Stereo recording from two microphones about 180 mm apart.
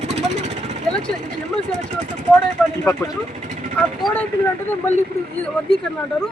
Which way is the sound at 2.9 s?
15° left (ahead or behind).